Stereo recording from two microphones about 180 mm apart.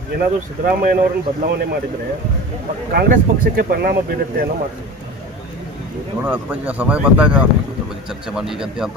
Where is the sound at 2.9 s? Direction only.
55° right (ahead or behind).